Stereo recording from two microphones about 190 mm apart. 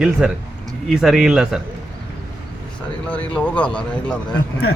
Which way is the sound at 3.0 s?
5° left (ahead or behind).